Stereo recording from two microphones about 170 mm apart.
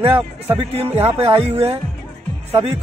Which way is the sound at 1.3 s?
35° right (ahead or behind).